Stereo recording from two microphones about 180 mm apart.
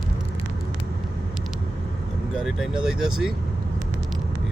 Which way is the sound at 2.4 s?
5° right (ahead or behind).